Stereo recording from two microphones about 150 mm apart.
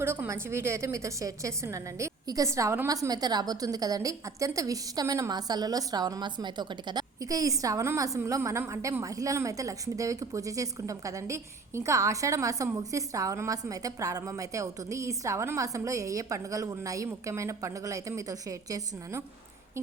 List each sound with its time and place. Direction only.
0.0 s a woman's voice: 15° right (ahead or behind)